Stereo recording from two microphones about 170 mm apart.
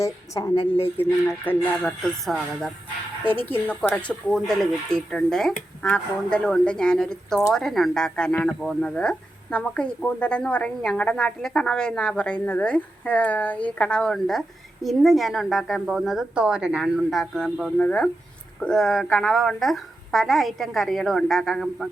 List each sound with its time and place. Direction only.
0.0 s speech: 15° left (ahead or behind)
0.5 s a woman's voice: 35° left (ahead or behind)
0.9 s speech: 10° left (ahead or behind)
3.8 s speech: 5° left (ahead or behind)